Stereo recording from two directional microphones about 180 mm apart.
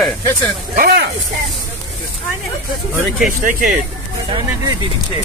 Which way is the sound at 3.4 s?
50° right (ahead or behind).